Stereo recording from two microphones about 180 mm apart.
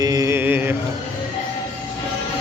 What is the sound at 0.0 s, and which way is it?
Music, 20° right (ahead or behind).